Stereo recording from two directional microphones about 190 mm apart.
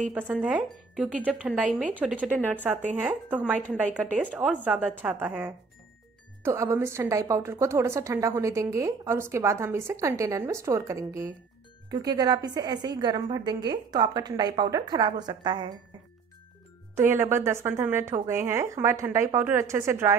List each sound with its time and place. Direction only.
0.2 s a woman's voice: 5° right (ahead or behind); by 15.7 s 20° right (ahead or behind)
16.9 s a woman's voice: 10° right (ahead or behind)